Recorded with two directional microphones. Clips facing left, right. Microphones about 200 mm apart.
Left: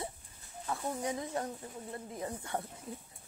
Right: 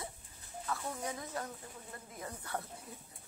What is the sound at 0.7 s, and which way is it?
Speech, 25° left (ahead or behind).